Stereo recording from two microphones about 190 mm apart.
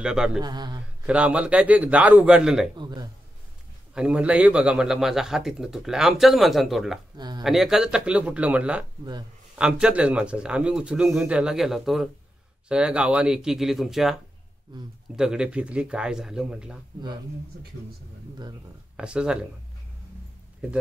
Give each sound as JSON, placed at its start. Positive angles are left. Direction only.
{"t": 0.0, "sound": "a man's voice", "side_deg": -5}
{"t": 0.4, "sound": "speech", "side_deg": -20}
{"t": 1.0, "sound": "a man's voice", "side_deg": -5}
{"t": 2.8, "sound": "speech", "side_deg": -20}
{"t": 3.9, "sound": "a man's voice", "side_deg": -5}
{"t": 7.2, "sound": "a sound", "side_deg": -20}
{"t": 7.4, "sound": "a man's voice", "side_deg": 0}
{"t": 18.9, "sound": "a man's voice", "side_deg": -5}